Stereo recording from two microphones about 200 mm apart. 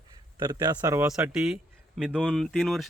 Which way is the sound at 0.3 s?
20° right (ahead or behind).